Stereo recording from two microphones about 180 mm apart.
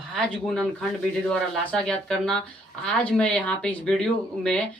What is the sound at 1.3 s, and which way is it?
Speech, 5° left (ahead or behind).